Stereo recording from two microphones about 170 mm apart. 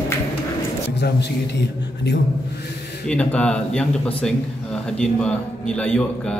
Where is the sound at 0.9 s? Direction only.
80° left.